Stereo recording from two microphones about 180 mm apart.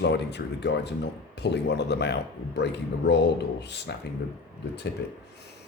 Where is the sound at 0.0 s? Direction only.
70° left (ahead or behind).